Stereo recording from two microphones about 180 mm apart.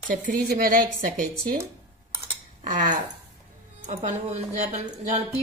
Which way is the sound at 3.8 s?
40° right (ahead or behind).